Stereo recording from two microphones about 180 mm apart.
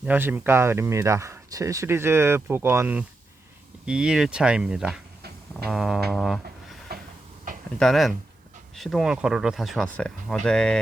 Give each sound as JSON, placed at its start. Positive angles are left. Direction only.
{"t": 0.0, "sound": "speech", "side_deg": -10}
{"t": 6.1, "sound": "music", "side_deg": 0}
{"t": 7.8, "sound": "speech", "side_deg": 0}